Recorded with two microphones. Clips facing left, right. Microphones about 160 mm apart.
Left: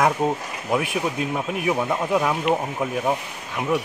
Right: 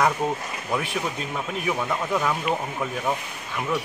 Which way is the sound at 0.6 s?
15° left (ahead or behind).